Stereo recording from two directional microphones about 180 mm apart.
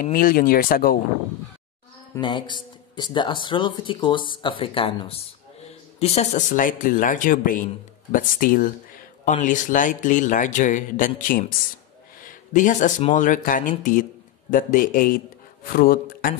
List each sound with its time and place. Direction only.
0.0 s speech: 50° left (ahead or behind)
2.1 s speech: 25° left (ahead or behind); by 16.3 s 50° left (ahead or behind)